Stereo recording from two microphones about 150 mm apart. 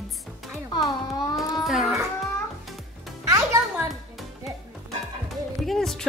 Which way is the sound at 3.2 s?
20° right (ahead or behind).